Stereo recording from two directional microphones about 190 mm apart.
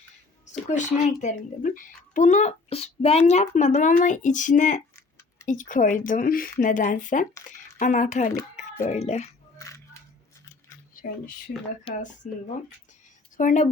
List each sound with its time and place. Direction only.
0.8 s speech: 40° left (ahead or behind)
9.6 s coin: 15° left (ahead or behind)
11.0 s a sound: 45° left (ahead or behind)
11.9 s speech: 30° left (ahead or behind)
12.2 s speech: 45° left (ahead or behind)